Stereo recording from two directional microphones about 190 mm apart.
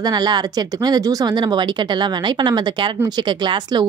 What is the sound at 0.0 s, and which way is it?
Speech, 20° right (ahead or behind).